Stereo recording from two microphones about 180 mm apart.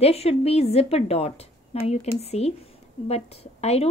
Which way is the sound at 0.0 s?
35° left (ahead or behind).